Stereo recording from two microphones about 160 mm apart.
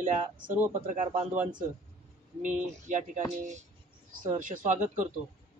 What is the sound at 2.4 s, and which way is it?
Speech, 50° right (ahead or behind).